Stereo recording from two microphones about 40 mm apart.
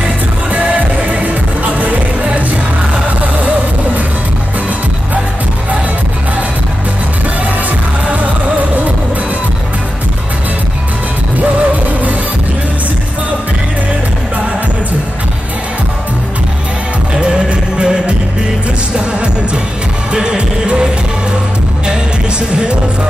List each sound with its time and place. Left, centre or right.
0.5 s music: right
8.1 s music: right
11.3 s music: right
17.2 s music: right
20.1 s music: right